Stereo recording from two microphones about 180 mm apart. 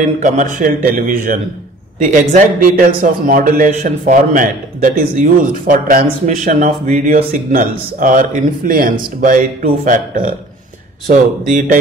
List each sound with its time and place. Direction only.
0.2 s a man's voice: 45° right (ahead or behind)